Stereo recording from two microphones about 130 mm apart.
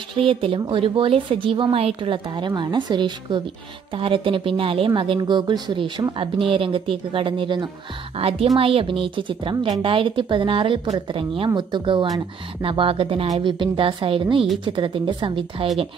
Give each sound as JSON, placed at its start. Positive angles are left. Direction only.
{"t": 0.1, "sound": "a woman's voice", "side_deg": -45}
{"t": 8.2, "sound": "a woman's voice", "side_deg": -50}